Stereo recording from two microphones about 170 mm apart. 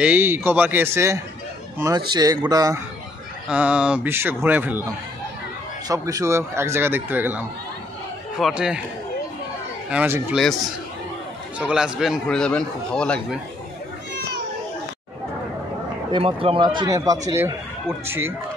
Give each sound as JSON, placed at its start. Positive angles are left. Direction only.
{"t": 0.0, "sound": "speech", "side_deg": -10}
{"t": 3.4, "sound": "speech", "side_deg": -5}
{"t": 5.9, "sound": "speech", "side_deg": -20}
{"t": 9.8, "sound": "speech", "side_deg": -10}
{"t": 16.1, "sound": "speech", "side_deg": -30}